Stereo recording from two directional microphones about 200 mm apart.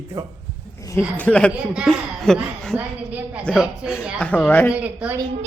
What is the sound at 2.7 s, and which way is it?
A man's voice, 10° right (ahead or behind).